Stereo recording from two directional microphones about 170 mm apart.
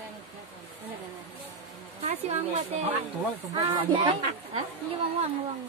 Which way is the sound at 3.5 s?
25° right (ahead or behind).